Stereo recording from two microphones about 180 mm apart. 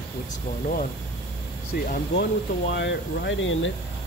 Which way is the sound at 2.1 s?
70° left (ahead or behind).